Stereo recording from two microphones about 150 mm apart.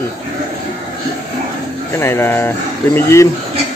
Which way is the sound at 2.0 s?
15° left (ahead or behind).